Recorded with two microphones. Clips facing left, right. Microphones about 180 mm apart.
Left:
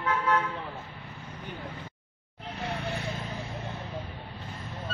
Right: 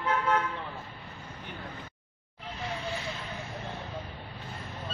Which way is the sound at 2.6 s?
60° left (ahead or behind).